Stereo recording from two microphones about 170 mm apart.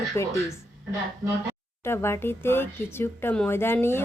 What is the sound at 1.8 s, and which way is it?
A woman's voice, 15° left (ahead or behind).